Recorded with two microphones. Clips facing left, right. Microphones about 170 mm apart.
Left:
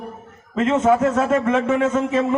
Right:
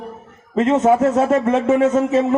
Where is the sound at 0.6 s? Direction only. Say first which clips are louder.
Right 2 dB; 20° right (ahead or behind).